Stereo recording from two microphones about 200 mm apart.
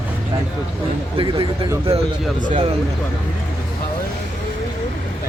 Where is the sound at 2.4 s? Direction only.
35° right (ahead or behind).